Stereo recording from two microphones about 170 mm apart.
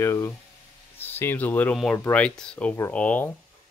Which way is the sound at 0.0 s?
15° left (ahead or behind).